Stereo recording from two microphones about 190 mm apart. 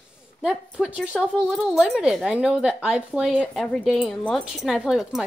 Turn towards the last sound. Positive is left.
turn(degrees=0)  # may be behind; listen again after turning